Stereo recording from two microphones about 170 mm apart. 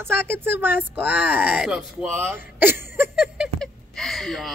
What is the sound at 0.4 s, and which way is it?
A woman's voice, 10° right (ahead or behind).